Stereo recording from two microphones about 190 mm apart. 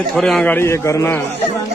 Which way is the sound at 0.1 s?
Centre (ahead or behind).